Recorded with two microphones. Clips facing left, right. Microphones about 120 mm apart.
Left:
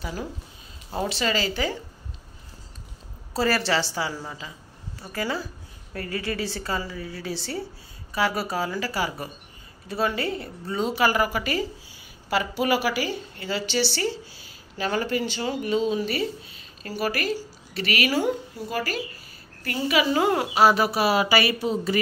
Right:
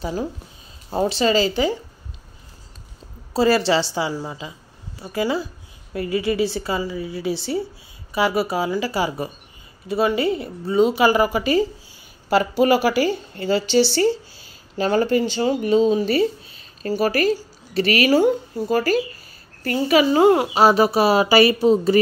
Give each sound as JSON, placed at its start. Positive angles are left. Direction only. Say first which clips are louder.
{"t": 0.0, "sound": "a woman's voice", "louder": "right 7 dB", "side_deg": -25}
{"t": 3.3, "sound": "a woman's voice", "louder": "right 6 dB", "side_deg": -20}
{"t": 12.3, "sound": "speech", "louder": "right 7 dB", "side_deg": -35}